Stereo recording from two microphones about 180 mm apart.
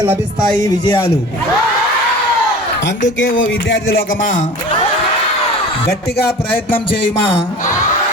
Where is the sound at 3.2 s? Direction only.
90° left; by 4.4 s 45° left (ahead or behind).